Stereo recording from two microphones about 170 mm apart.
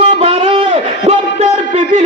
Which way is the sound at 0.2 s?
35° right (ahead or behind).